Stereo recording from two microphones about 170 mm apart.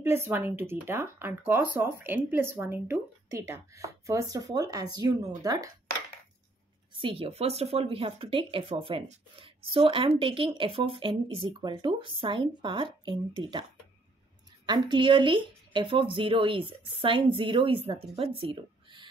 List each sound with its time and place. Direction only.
0.0 s speech: 15° right (ahead or behind)
6.9 s speech: 30° right (ahead or behind)
14.7 s speech: 25° right (ahead or behind)